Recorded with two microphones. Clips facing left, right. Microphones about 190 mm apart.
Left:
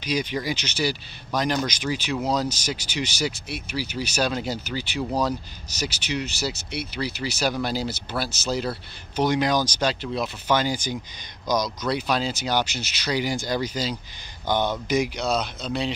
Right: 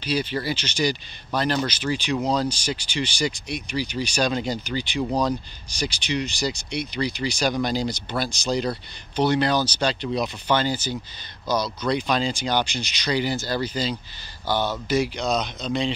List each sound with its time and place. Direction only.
0.0 s speech: 10° left (ahead or behind)